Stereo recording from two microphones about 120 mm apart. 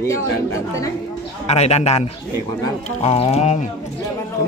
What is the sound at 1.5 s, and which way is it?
Music, 65° left (ahead or behind).